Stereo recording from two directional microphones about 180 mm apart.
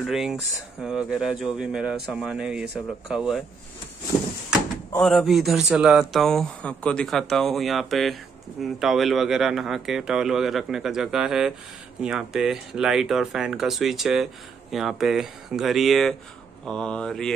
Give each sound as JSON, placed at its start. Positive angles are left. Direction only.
{"t": 0.0, "sound": "speech", "side_deg": 0}
{"t": 5.0, "sound": "speech", "side_deg": 0}